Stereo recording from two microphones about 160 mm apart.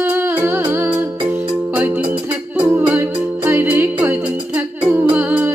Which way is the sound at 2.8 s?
15° right (ahead or behind).